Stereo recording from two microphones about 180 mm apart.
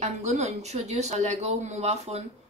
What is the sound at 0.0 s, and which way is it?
Speech, 40° right (ahead or behind).